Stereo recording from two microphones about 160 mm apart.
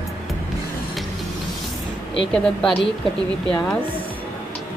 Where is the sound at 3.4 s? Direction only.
5° left (ahead or behind).